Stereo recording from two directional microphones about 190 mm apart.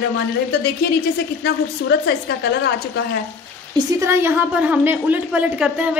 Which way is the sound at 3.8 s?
15° right (ahead or behind).